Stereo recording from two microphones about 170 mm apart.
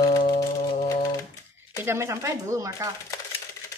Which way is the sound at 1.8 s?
15° right (ahead or behind).